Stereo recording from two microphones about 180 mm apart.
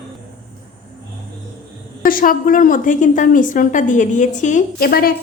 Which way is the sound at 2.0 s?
50° left (ahead or behind).